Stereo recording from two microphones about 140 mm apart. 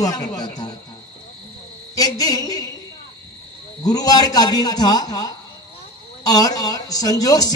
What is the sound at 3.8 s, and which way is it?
A man's voice, 25° left (ahead or behind).